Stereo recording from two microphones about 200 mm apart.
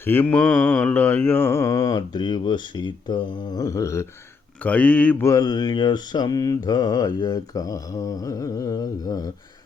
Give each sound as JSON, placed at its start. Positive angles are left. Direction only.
{"t": 0.0, "sound": "mantra", "side_deg": 10}